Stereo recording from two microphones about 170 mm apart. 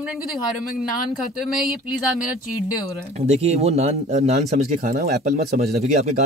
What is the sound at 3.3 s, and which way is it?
Speech, 40° right (ahead or behind).